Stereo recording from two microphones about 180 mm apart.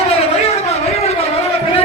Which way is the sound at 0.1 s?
35° left (ahead or behind).